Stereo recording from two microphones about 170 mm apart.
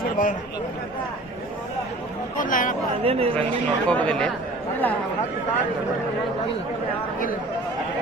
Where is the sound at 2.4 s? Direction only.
50° left (ahead or behind).